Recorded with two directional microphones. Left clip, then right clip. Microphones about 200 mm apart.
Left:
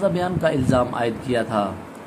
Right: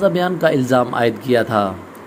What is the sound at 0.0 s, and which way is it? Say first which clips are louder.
Speech: right 5 dB; 20° right (ahead or behind).